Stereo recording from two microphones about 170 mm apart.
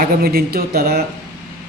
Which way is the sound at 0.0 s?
60° right (ahead or behind).